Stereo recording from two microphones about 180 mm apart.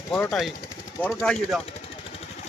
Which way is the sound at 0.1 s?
5° left (ahead or behind).